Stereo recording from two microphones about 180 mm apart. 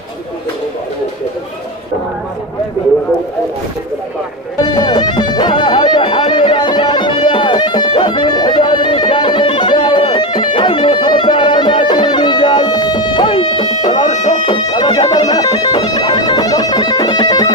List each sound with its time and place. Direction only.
4.6 s music: 25° left (ahead or behind)
14.0 s music: 40° left (ahead or behind)
14.3 s bagpipes: 25° left (ahead or behind)